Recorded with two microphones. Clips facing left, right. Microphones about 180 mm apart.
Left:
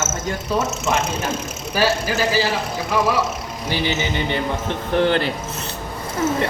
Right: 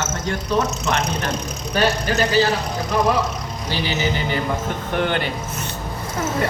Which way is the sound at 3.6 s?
20° left (ahead or behind).